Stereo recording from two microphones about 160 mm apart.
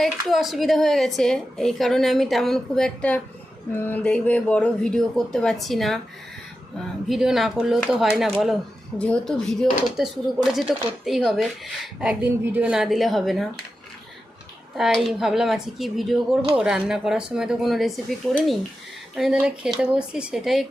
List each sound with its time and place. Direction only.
0.0 s speech: centre (ahead or behind)
7.1 s speech: centre (ahead or behind)
14.8 s speech: centre (ahead or behind)